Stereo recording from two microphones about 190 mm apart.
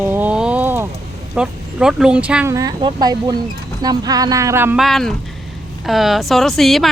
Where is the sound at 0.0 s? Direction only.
10° right (ahead or behind).